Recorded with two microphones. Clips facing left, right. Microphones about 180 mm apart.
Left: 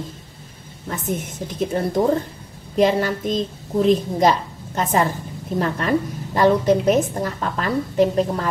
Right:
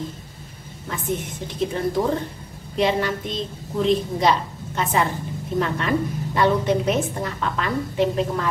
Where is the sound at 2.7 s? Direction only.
45° left (ahead or behind).